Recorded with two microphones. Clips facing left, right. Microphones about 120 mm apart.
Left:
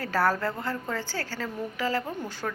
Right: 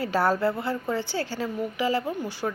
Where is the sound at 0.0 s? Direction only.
15° right (ahead or behind).